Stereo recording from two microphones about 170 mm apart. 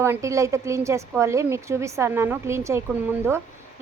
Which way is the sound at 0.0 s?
15° right (ahead or behind).